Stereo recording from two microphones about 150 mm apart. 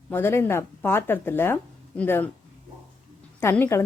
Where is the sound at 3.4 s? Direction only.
15° left (ahead or behind).